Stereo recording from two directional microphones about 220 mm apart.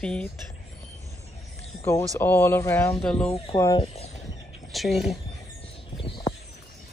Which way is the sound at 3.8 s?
30° left (ahead or behind).